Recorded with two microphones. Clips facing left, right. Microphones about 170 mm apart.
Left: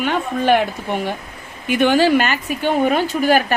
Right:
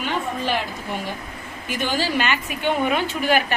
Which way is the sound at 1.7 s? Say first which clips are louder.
Left 10 dB; 60° left (ahead or behind).